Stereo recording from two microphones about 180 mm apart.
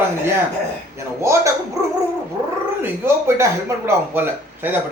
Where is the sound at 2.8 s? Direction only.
15° right (ahead or behind).